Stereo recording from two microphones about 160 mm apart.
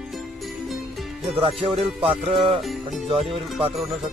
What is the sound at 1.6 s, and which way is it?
Speech, 35° right (ahead or behind).